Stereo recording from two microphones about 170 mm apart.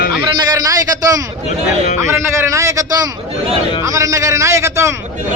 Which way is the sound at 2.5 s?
20° right (ahead or behind).